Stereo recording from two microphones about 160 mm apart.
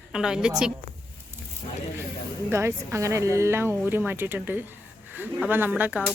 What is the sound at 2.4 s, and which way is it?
A child's voice, 15° right (ahead or behind).